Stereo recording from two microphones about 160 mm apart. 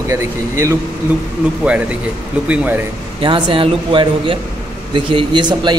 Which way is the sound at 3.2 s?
30° right (ahead or behind).